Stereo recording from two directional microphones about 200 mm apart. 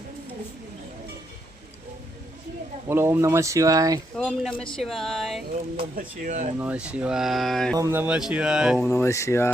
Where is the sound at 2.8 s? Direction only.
10° right (ahead or behind).